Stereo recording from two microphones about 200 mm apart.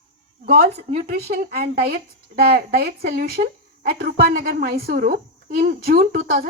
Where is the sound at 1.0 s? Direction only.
50° right (ahead or behind).